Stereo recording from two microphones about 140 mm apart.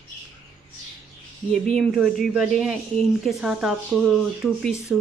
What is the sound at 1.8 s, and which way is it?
A woman's voice, centre (ahead or behind).